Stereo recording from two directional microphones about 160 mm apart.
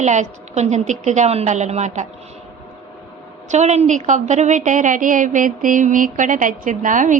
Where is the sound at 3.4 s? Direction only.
45° right (ahead or behind).